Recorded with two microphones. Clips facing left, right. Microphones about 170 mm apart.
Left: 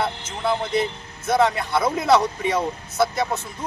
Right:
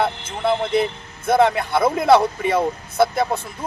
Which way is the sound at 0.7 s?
55° right (ahead or behind).